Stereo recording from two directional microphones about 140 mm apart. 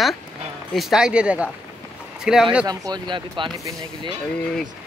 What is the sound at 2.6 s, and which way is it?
Speech, 30° right (ahead or behind).